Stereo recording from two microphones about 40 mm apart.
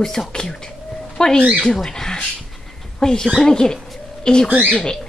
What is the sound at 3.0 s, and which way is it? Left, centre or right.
Speech, centre.